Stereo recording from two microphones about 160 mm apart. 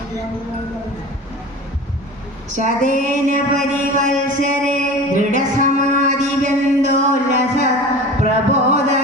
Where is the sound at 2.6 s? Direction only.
50° right (ahead or behind).